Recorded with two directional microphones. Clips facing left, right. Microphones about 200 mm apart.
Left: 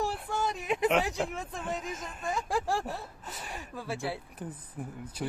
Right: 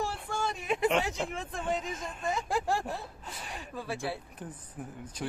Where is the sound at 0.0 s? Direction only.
15° left (ahead or behind).